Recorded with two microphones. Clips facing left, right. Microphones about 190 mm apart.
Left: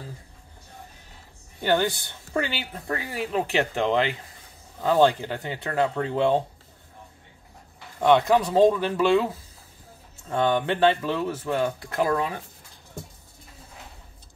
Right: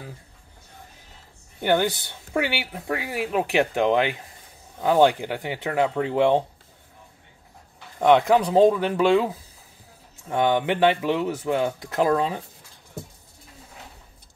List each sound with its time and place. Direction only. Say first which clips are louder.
1.6 s speech: right 1 dB; 15° right (ahead or behind)
8.0 s speech: right 2 dB; 15° right (ahead or behind)